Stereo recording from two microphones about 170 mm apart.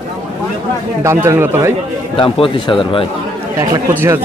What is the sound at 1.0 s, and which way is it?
Speech, 15° right (ahead or behind).